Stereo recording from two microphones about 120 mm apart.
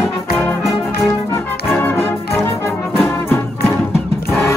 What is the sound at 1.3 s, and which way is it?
Music, 20° left (ahead or behind).